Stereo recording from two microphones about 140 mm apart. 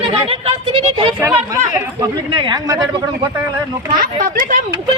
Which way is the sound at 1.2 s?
15° right (ahead or behind).